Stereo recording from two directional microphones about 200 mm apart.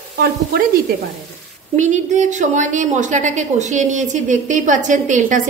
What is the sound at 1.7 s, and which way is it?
A woman's voice, 35° right (ahead or behind).